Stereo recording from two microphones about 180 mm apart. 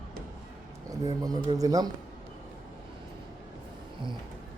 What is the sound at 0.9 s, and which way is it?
Speech, 20° right (ahead or behind).